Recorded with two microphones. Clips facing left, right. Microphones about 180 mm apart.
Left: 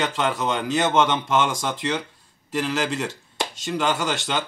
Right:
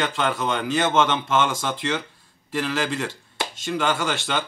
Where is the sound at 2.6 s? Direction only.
5° left (ahead or behind).